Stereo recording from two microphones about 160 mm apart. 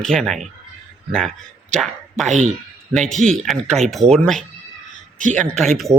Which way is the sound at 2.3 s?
45° right (ahead or behind).